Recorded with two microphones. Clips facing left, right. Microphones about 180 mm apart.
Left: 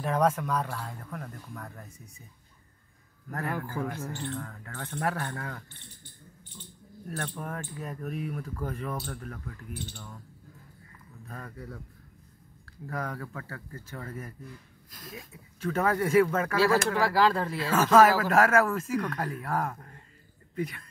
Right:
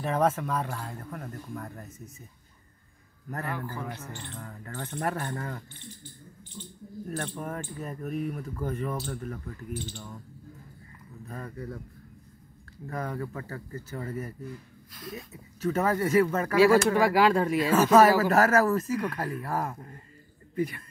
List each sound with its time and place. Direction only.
0.0 s speech: 5° right (ahead or behind)
3.3 s speech: centre (ahead or behind)
11.2 s speech: 5° right (ahead or behind)
12.8 s speech: 5° right (ahead or behind)
14.9 s speech: 45° left (ahead or behind)
15.6 s speech: 5° right (ahead or behind)